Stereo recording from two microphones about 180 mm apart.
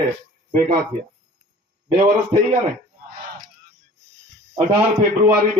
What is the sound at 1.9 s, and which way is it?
Speech, 25° right (ahead or behind).